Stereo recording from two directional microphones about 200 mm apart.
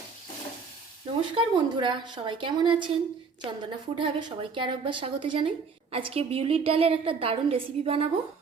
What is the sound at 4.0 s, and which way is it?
A woman's voice, 25° right (ahead or behind).